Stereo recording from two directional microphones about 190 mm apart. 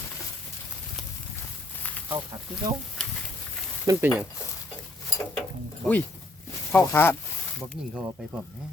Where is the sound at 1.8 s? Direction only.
10° left (ahead or behind).